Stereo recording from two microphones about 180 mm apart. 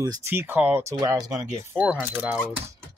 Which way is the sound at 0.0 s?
15° right (ahead or behind).